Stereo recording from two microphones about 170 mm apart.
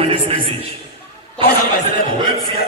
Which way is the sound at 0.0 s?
35° right (ahead or behind).